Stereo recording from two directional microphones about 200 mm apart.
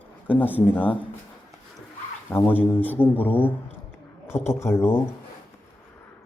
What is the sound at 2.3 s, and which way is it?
Speech, 10° left (ahead or behind).